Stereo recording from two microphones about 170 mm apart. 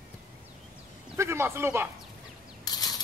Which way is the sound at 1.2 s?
15° right (ahead or behind).